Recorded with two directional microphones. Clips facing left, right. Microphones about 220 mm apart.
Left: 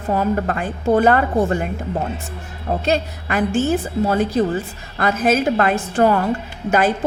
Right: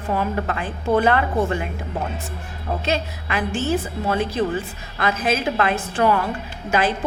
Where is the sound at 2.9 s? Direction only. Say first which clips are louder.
Left 4 dB; 45° left (ahead or behind).